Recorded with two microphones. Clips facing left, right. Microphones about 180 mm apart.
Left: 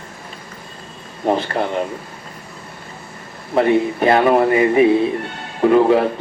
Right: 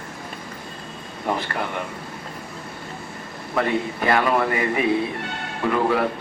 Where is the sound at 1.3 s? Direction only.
25° left (ahead or behind).